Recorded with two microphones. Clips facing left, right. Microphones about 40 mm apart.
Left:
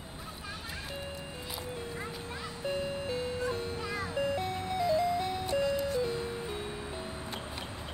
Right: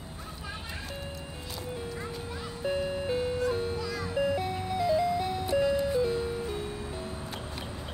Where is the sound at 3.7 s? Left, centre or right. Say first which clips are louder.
Right 2 dB; left.